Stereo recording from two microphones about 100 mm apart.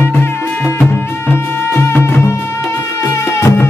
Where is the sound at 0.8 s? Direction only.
20° left (ahead or behind).